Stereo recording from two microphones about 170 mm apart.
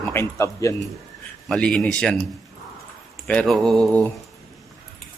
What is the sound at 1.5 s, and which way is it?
Speech, 5° left (ahead or behind).